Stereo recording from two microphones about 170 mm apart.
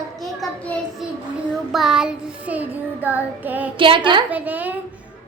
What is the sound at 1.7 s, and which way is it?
A woman's voice, centre (ahead or behind).